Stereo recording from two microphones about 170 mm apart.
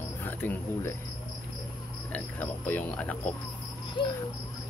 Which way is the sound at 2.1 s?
10° left (ahead or behind).